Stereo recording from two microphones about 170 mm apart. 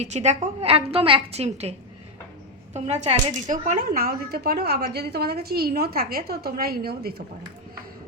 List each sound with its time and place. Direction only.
0.0 s a woman's voice: 40° right (ahead or behind)
2.7 s speech: 40° right (ahead or behind); by 7.2 s 65° right (ahead or behind)